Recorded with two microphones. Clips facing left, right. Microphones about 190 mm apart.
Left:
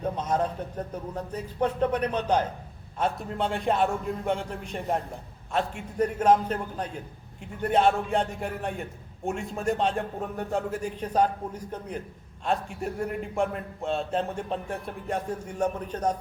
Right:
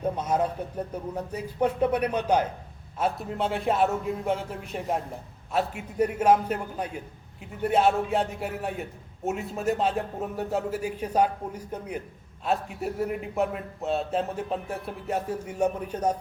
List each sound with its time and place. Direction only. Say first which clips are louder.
0.0 s a man's voice: right 1 dB; 10° right (ahead or behind)